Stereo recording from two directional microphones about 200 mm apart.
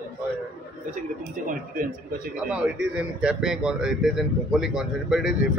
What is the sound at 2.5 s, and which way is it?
A man's voice, 5° right (ahead or behind).